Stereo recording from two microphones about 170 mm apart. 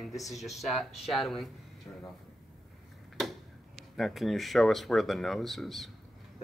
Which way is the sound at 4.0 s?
Centre (ahead or behind).